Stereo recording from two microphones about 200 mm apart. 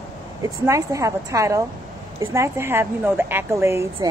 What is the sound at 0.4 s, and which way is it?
A woman's voice, 15° right (ahead or behind).